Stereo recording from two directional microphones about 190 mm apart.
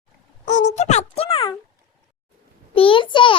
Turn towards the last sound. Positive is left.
turn(degrees=25)  # may be behind; listen again after turning